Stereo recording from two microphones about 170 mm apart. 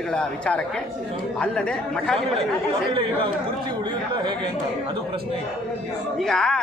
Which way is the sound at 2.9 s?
30° right (ahead or behind).